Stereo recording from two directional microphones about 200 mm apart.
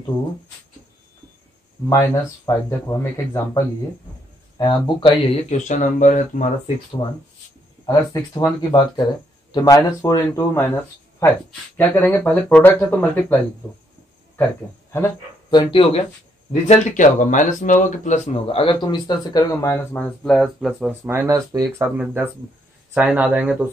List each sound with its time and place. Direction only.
1.9 s speech: 15° left (ahead or behind); by 6.4 s 40° left (ahead or behind)
7.8 s speech: 20° left (ahead or behind)
15.7 s speech: 30° left (ahead or behind); by 20.9 s centre (ahead or behind)
21.0 s speech: 10° right (ahead or behind)